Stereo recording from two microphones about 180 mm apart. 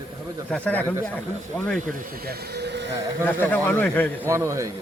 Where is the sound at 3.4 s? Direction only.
10° left (ahead or behind).